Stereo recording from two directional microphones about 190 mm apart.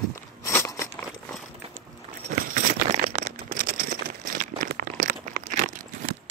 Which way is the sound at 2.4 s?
40° right (ahead or behind).